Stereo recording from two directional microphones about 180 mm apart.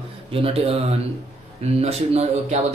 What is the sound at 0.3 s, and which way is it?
Speech, 30° right (ahead or behind).